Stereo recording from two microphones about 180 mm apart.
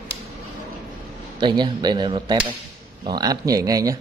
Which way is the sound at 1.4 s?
25° right (ahead or behind).